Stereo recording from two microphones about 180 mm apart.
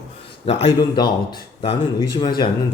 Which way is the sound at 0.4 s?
25° left (ahead or behind).